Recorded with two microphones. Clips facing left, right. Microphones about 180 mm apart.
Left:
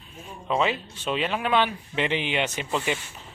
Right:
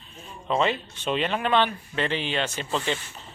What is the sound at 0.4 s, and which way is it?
Speech, 5° left (ahead or behind).